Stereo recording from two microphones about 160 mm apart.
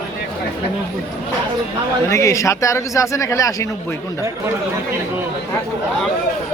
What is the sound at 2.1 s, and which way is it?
Speech, 20° left (ahead or behind).